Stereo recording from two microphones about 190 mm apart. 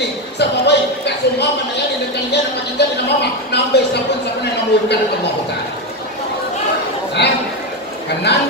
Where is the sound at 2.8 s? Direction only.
60° left (ahead or behind).